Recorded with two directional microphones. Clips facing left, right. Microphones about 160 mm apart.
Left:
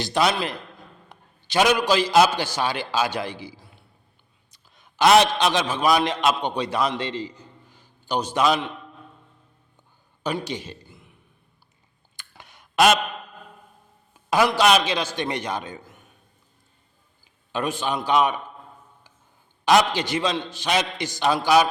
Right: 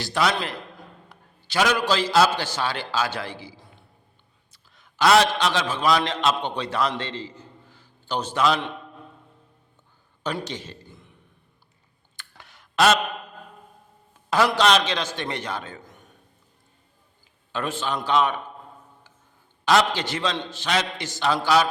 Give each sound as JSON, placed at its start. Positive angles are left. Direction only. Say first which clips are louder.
{"t": 0.0, "sound": "a man's voice", "louder": "left 2 dB", "side_deg": 20}
{"t": 4.5, "sound": "a man's voice", "louder": "left 3 dB", "side_deg": 20}
{"t": 10.4, "sound": "a man's voice", "louder": "left 3 dB", "side_deg": 10}
{"t": 12.1, "sound": "clicking", "louder": "left 1 dB", "side_deg": 15}
{"t": 14.3, "sound": "a man's voice", "louder": "left 1 dB", "side_deg": 15}
{"t": 17.5, "sound": "a man's voice", "louder": "left 2 dB", "side_deg": 15}
{"t": 19.9, "sound": "a man's voice", "louder": "left 2 dB", "side_deg": 15}